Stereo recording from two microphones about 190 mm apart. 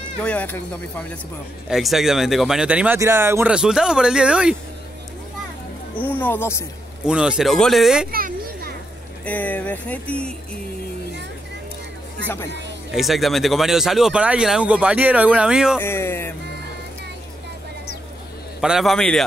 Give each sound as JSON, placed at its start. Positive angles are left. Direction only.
{"t": 0.2, "sound": "speech", "side_deg": 5}
{"t": 5.9, "sound": "speech", "side_deg": 10}
{"t": 7.1, "sound": "speech", "side_deg": -5}
{"t": 8.1, "sound": "children playing", "side_deg": -50}
{"t": 9.2, "sound": "speech", "side_deg": 10}
{"t": 12.9, "sound": "speech", "side_deg": 0}
{"t": 15.8, "sound": "music", "side_deg": 15}
{"t": 18.6, "sound": "speech", "side_deg": 0}